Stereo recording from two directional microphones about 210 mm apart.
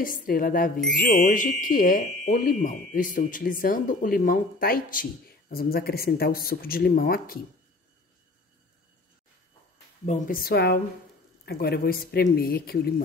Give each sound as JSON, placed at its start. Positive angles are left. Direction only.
{"t": 0.0, "sound": "speech", "side_deg": 40}
{"t": 10.0, "sound": "speech", "side_deg": 40}